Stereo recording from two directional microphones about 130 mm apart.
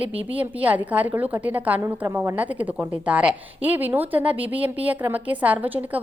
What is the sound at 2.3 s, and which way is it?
A woman's voice, 10° right (ahead or behind).